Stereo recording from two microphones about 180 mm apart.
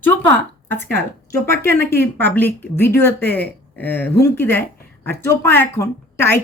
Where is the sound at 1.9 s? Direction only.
10° left (ahead or behind).